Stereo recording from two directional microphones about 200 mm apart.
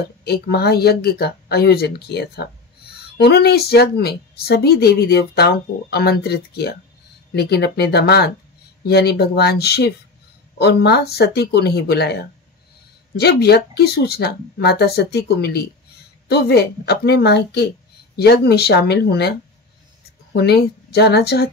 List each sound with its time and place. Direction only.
0.2 s speech: 55° left (ahead or behind)
20.3 s speech: 55° left (ahead or behind)